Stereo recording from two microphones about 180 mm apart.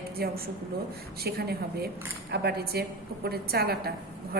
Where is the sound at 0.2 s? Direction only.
60° right (ahead or behind).